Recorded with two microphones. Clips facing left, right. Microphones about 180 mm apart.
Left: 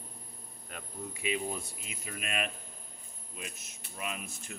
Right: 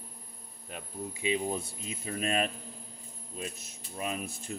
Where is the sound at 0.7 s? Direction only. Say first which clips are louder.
Right 3 dB; 25° right (ahead or behind).